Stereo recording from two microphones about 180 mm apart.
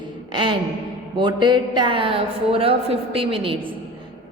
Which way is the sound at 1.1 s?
25° right (ahead or behind).